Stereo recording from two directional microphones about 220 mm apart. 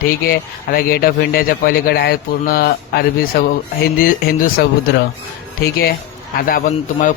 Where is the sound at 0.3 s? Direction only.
40° left (ahead or behind).